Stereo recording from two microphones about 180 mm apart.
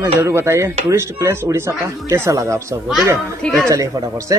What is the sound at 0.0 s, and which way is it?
Speech, 15° right (ahead or behind).